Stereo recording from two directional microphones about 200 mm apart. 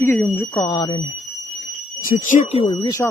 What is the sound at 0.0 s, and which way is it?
Speech, 10° left (ahead or behind).